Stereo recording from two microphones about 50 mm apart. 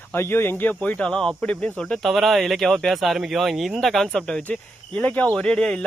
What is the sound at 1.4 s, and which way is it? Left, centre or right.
Speech, left.